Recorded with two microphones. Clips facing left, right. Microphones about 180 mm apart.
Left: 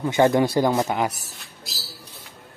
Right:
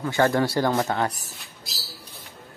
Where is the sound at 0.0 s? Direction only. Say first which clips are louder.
Left 3 dB; 20° left (ahead or behind).